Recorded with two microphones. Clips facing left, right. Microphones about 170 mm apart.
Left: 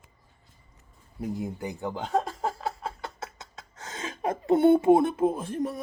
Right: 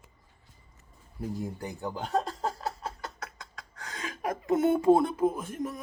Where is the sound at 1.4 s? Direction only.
20° left (ahead or behind).